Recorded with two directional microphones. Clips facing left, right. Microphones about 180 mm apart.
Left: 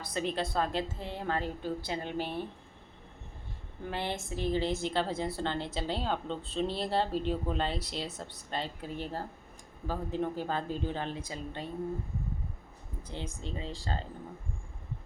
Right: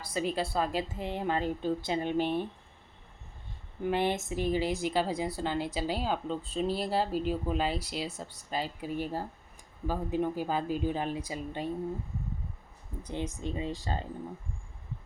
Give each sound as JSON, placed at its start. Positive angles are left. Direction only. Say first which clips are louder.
{"t": 0.0, "sound": "speech", "louder": "right 2 dB", "side_deg": -5}
{"t": 3.8, "sound": "speech", "louder": "right 7 dB", "side_deg": -15}
{"t": 13.1, "sound": "speech", "louder": "right 5 dB", "side_deg": -20}